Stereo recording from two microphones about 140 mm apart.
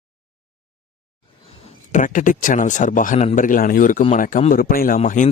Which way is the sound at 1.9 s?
65° left (ahead or behind).